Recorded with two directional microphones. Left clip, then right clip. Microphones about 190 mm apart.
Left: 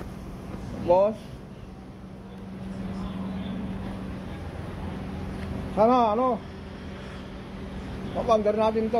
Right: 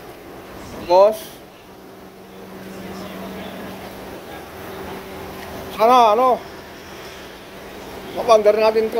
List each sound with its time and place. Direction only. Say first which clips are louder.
0.8 s speech: right 8 dB; 15° right (ahead or behind)
5.8 s speech: right 8 dB; 10° right (ahead or behind)
8.3 s speech: right 9 dB; 5° right (ahead or behind)